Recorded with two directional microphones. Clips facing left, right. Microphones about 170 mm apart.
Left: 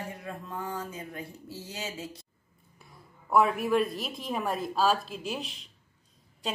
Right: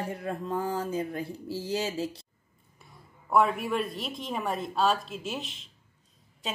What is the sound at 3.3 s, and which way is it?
Speech, centre (ahead or behind).